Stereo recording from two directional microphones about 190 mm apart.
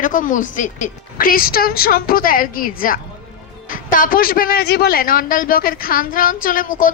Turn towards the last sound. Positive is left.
turn(degrees=45)  # may be behind; listen again after turning